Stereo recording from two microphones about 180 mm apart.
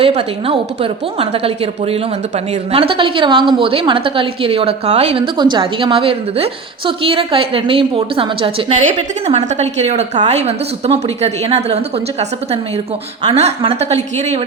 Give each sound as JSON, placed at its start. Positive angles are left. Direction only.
{"t": 0.0, "sound": "a woman's voice", "side_deg": -35}
{"t": 13.3, "sound": "speech", "side_deg": -35}